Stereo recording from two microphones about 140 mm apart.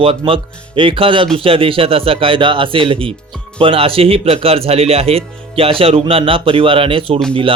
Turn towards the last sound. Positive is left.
turn(degrees=-40)  # may be behind; listen again after turning